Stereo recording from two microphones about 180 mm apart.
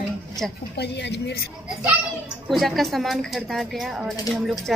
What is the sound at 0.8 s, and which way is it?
Speech, 70° left (ahead or behind).